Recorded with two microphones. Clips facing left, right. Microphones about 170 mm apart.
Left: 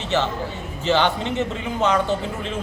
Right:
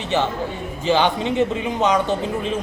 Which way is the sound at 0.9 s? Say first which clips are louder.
Right 2 dB; 15° right (ahead or behind).